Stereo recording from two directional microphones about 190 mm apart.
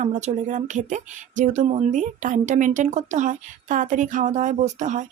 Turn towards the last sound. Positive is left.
turn(degrees=-40)  # may be behind; listen again after turning